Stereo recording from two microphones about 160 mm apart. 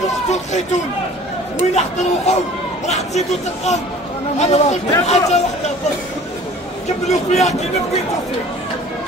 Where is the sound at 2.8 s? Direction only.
45° left (ahead or behind).